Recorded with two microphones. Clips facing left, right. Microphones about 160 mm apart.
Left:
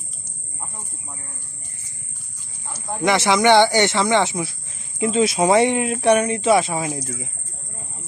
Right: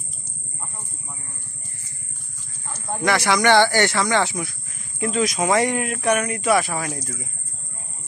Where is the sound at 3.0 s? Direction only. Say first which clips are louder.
Left 3 dB; 20° left (ahead or behind).